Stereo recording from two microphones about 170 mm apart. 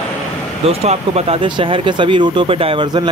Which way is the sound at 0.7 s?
35° right (ahead or behind).